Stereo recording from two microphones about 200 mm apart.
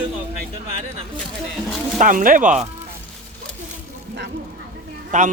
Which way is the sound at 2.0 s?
40° right (ahead or behind).